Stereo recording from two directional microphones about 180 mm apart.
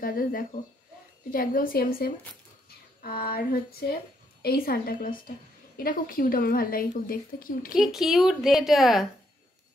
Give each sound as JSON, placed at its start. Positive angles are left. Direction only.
{"t": 0.0, "sound": "a woman's voice", "side_deg": 55}
{"t": 7.8, "sound": "a woman's voice", "side_deg": 0}